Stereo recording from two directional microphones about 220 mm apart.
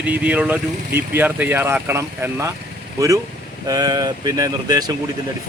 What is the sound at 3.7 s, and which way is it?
Speech, 15° right (ahead or behind).